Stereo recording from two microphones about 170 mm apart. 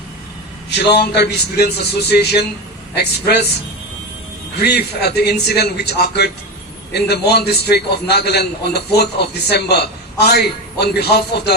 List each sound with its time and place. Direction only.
0.7 s a man's voice: 80° left
4.6 s a man's voice: 70° left (ahead or behind)